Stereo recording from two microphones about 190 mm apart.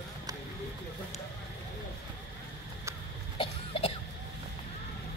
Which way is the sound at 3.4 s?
30° left (ahead or behind).